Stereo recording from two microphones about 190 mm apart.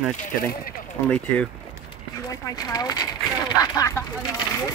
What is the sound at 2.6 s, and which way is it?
Speech, 20° left (ahead or behind).